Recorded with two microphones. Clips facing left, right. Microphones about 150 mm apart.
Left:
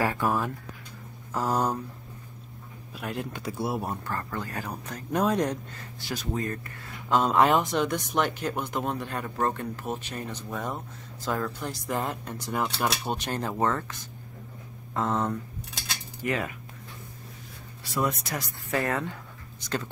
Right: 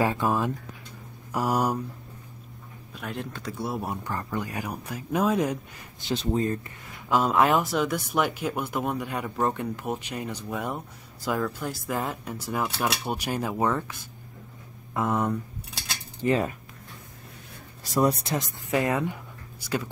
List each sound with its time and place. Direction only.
0.0 s speech: 20° right (ahead or behind)
2.9 s speech: centre (ahead or behind)
3.9 s speech: 15° right (ahead or behind)
5.9 s speech: 25° right (ahead or behind)
7.1 s speech: 5° right (ahead or behind)
15.0 s speech: 10° right (ahead or behind)
16.2 s speech: 30° right (ahead or behind)
17.9 s speech: 35° right (ahead or behind); by 19.9 s 10° right (ahead or behind)